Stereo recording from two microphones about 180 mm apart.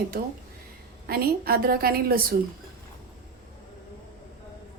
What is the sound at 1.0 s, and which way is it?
A woman's voice, 55° right (ahead or behind).